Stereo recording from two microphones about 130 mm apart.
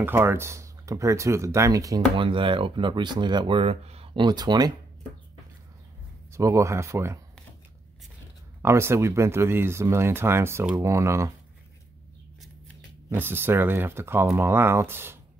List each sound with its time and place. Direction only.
0.0 s speech: 20° right (ahead or behind)
2.1 s speech: 40° right (ahead or behind)
6.3 s speech: 25° right (ahead or behind)
8.6 s speech: 20° right (ahead or behind)
13.1 s speech: 15° right (ahead or behind)